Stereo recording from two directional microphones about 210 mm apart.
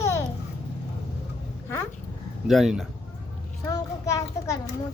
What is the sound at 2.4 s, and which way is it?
Speech, centre (ahead or behind).